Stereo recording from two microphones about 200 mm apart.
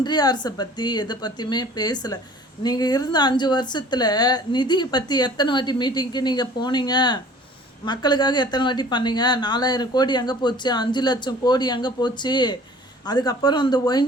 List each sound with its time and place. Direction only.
0.0 s a woman's voice: 20° left (ahead or behind)